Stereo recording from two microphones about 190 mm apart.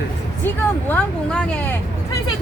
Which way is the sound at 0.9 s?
5° left (ahead or behind).